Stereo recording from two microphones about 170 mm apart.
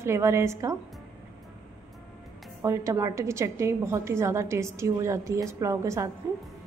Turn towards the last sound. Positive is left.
turn(degrees=-15)  # may be behind; listen again after turning